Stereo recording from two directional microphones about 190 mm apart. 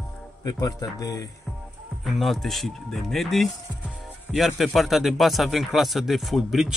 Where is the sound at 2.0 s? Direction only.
Centre (ahead or behind).